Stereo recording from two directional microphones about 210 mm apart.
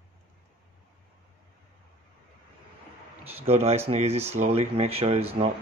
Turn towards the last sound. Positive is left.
turn(degrees=-30)  # may be behind; listen again after turning